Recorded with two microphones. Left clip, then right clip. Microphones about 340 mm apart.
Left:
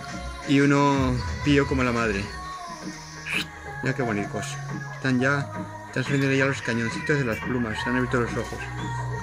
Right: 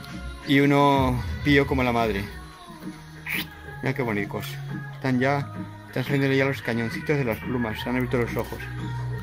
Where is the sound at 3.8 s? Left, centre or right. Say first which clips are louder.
Even; centre.